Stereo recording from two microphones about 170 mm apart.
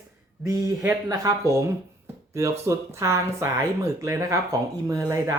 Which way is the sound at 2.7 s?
15° right (ahead or behind).